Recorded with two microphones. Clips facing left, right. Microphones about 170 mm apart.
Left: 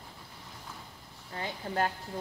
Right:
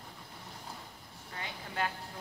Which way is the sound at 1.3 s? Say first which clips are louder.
Left 7 dB; 40° left (ahead or behind).